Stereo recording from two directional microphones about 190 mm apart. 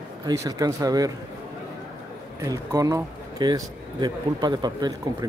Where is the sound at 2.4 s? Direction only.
20° right (ahead or behind).